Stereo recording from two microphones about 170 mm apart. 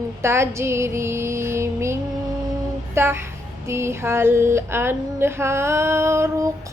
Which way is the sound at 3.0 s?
15° right (ahead or behind).